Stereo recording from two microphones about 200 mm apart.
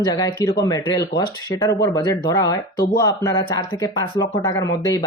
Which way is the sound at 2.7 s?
45° left (ahead or behind).